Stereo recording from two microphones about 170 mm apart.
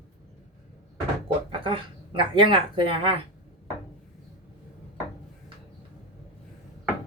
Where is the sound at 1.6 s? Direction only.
30° right (ahead or behind).